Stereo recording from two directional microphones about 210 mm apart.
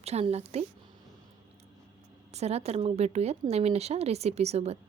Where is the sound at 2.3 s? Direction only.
30° right (ahead or behind).